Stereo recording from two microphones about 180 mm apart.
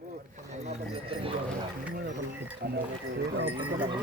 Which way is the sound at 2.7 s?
75° right (ahead or behind).